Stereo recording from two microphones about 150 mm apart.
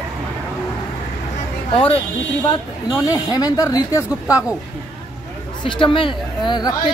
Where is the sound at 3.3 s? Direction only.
25° left (ahead or behind).